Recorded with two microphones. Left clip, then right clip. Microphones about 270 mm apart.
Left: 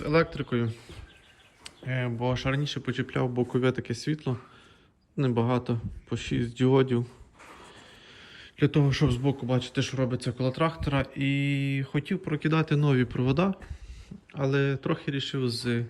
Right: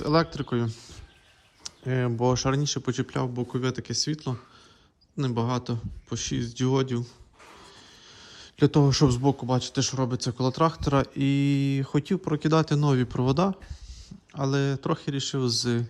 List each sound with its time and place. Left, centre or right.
0.0 s speech: centre